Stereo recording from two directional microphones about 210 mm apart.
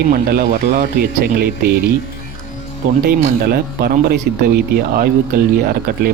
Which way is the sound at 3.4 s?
45° right (ahead or behind).